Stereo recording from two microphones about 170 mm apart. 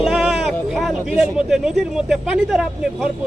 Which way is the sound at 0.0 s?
5° right (ahead or behind).